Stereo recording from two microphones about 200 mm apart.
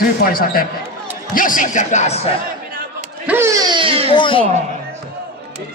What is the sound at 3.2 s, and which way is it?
Baby cry, 10° right (ahead or behind).